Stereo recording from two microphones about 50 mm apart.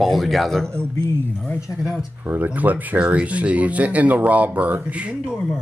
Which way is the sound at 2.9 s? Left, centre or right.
Right.